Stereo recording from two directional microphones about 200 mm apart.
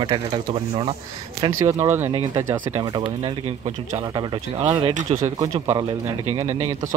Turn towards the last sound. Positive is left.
turn(degrees=-15)  # may be behind; listen again after turning